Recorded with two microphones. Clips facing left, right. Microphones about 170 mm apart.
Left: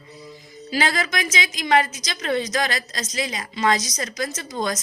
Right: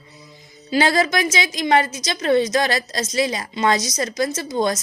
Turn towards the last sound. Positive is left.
turn(degrees=-30)  # may be behind; listen again after turning